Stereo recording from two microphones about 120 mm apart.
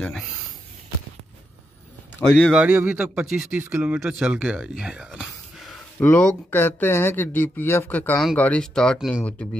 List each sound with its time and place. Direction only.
0.0 s speech: 5° left (ahead or behind)
2.1 s speech: 10° left (ahead or behind)
2.5 s speech: 10° right (ahead or behind)
5.9 s speech: 15° left (ahead or behind)